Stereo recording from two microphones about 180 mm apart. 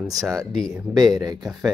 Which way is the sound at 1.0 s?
20° right (ahead or behind).